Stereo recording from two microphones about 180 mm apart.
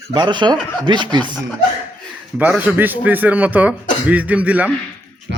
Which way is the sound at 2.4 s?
10° right (ahead or behind).